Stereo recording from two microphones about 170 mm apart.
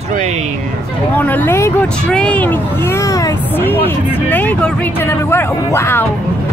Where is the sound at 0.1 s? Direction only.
40° right (ahead or behind).